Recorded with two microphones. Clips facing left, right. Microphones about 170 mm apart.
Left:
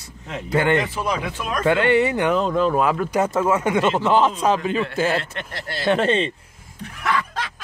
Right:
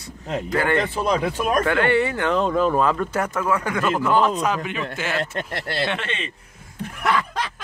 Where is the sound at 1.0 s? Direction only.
35° right (ahead or behind).